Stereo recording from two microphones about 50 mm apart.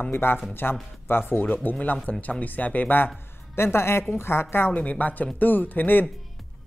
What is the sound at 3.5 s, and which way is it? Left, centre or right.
A woman's voice, left.